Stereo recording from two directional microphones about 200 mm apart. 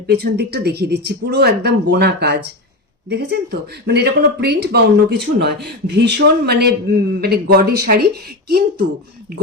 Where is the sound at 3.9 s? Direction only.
55° right (ahead or behind).